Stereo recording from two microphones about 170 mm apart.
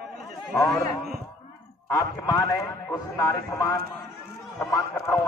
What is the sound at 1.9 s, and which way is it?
Speech, 15° left (ahead or behind).